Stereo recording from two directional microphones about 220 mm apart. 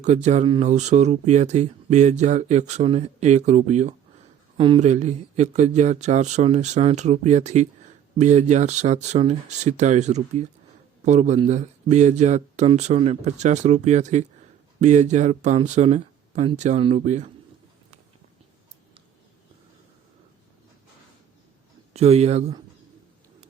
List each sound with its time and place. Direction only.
0.0 s speech: 30° right (ahead or behind)
21.9 s speech: 30° right (ahead or behind)